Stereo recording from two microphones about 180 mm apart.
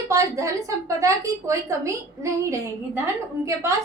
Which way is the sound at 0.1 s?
15° right (ahead or behind).